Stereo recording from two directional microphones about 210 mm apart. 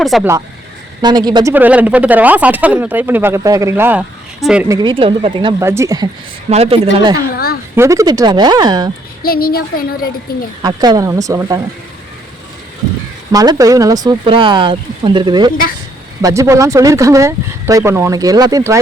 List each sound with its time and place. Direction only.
0.0 s speech: centre (ahead or behind)
1.0 s speech: 20° right (ahead or behind)
1.5 s speech: 10° right (ahead or behind)
4.7 s speech: 20° right (ahead or behind)
6.5 s speech: 30° right (ahead or behind)
7.8 s speech: 15° right (ahead or behind)
9.2 s a woman's voice: 45° left (ahead or behind)
10.6 s speech: 20° right (ahead or behind)
13.3 s speech: 15° right (ahead or behind)